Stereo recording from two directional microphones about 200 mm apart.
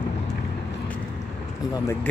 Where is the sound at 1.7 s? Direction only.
15° left (ahead or behind).